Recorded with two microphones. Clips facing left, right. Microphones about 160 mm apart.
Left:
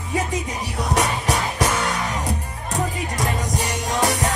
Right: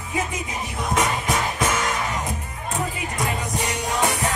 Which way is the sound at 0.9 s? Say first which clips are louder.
Left 1 dB; 75° left (ahead or behind).